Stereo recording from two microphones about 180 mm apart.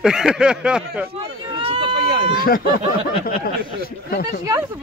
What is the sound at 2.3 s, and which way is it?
Speech, 55° left (ahead or behind).